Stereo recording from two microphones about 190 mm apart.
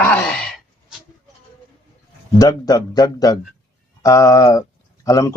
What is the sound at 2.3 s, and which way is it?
A man's voice, 20° left (ahead or behind).